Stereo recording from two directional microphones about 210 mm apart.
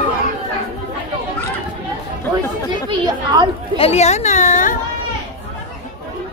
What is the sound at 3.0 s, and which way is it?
Speech, 20° right (ahead or behind).